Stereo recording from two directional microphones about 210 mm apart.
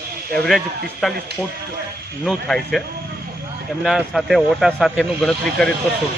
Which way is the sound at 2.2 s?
Centre (ahead or behind).